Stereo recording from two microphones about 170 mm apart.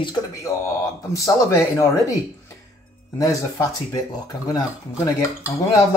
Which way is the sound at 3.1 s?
20° left (ahead or behind).